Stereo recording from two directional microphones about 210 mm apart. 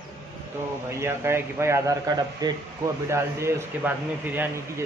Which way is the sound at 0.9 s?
10° right (ahead or behind).